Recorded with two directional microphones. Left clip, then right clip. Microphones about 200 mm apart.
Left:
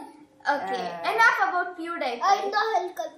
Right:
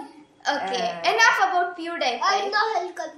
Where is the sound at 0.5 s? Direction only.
15° right (ahead or behind).